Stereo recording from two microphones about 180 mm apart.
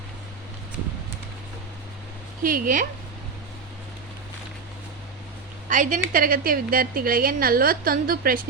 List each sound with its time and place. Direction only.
2.4 s a woman's voice: 50° right (ahead or behind)
5.6 s a woman's voice: 45° right (ahead or behind)